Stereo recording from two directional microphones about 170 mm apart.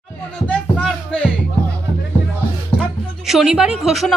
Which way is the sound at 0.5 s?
5° left (ahead or behind).